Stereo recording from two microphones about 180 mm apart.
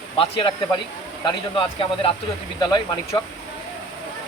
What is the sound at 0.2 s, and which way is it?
Speech, 30° left (ahead or behind).